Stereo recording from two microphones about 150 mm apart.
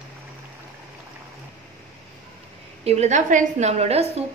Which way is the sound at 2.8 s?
45° right (ahead or behind).